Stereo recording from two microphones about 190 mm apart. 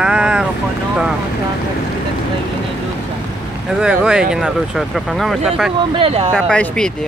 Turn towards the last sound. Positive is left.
turn(degrees=5)  # may be behind; listen again after turning